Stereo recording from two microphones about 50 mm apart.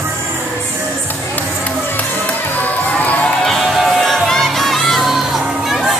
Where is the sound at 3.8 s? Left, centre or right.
Centre.